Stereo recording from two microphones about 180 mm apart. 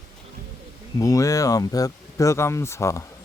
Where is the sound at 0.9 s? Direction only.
20° left (ahead or behind).